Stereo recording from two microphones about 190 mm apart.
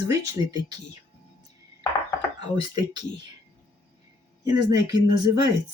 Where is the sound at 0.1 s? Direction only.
20° right (ahead or behind).